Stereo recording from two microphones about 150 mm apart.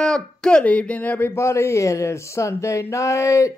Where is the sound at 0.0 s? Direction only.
5° left (ahead or behind).